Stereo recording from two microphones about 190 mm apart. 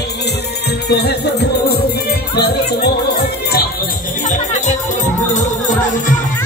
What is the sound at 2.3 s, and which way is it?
Speech, 55° left (ahead or behind).